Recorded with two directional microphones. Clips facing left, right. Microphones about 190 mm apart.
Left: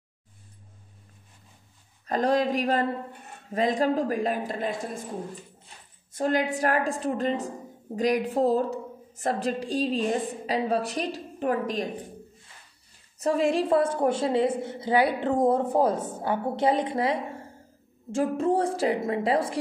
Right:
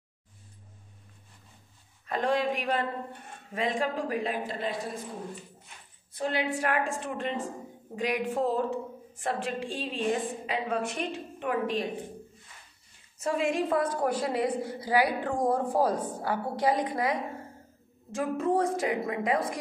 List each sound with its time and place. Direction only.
2.0 s a woman's voice: 40° left (ahead or behind)
5.7 s a sound: 35° left (ahead or behind)
6.1 s a woman's voice: 45° left (ahead or behind)
13.2 s a woman's voice: 35° left (ahead or behind)